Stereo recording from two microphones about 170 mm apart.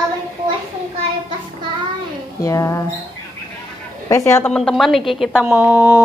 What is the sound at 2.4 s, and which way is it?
Speech, 20° left (ahead or behind).